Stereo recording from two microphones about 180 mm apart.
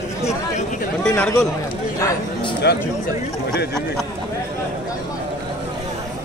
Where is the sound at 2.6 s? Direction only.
70° left (ahead or behind).